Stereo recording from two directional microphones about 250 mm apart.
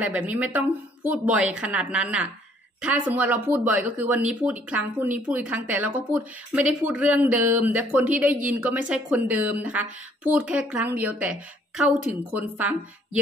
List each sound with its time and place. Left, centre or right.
0.0 s speech: centre